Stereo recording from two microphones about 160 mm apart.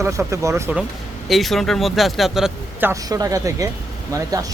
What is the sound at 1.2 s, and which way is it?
Speech, centre (ahead or behind).